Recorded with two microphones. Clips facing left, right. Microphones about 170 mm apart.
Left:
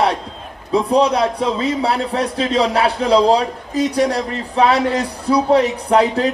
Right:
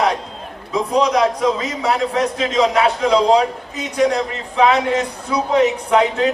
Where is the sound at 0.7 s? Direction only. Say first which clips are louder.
Left 2 dB; 30° left (ahead or behind).